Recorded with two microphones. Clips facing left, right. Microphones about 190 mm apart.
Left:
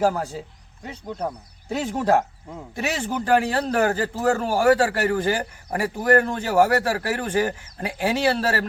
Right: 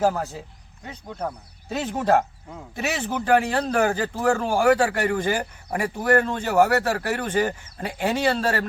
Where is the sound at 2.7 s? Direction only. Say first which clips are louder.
Left 1 dB; 10° left (ahead or behind).